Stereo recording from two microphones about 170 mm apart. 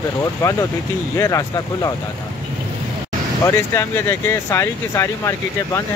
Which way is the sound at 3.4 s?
15° left (ahead or behind).